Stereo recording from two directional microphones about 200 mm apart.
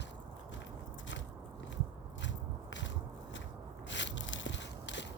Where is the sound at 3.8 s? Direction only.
65° left (ahead or behind).